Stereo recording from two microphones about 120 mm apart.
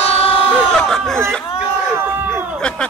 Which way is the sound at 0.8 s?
5° left (ahead or behind).